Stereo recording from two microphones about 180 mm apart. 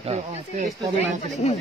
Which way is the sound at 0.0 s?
35° right (ahead or behind).